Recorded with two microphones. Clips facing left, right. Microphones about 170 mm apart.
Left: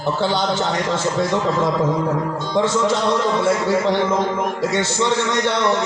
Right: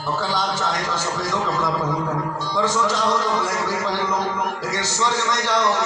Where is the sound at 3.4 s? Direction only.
65° left (ahead or behind).